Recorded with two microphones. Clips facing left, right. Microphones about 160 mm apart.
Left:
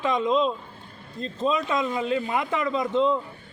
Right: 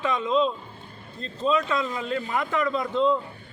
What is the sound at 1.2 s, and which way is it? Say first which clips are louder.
A man's voice: right 1 dB; 15° left (ahead or behind).